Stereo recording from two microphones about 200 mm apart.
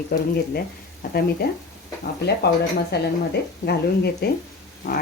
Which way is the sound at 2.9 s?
55° left (ahead or behind).